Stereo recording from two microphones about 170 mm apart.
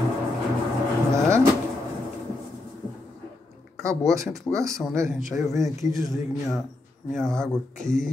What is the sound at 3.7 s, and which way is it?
Speech, centre (ahead or behind).